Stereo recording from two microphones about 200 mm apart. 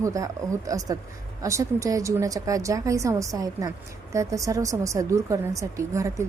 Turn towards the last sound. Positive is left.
turn(degrees=-15)  # may be behind; listen again after turning